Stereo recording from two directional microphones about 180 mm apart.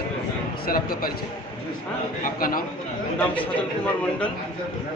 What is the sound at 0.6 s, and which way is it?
Speech, 55° left (ahead or behind).